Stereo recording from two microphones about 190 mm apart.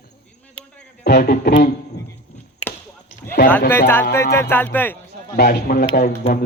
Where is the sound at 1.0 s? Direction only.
60° left (ahead or behind).